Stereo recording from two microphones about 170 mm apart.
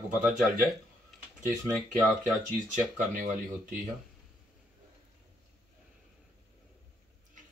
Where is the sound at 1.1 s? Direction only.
Centre (ahead or behind).